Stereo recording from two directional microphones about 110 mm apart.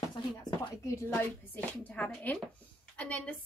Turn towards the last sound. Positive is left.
turn(degrees=10)  # may be behind; listen again after turning